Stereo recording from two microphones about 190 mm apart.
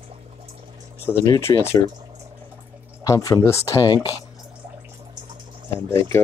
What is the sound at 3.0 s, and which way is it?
Speech, 20° left (ahead or behind).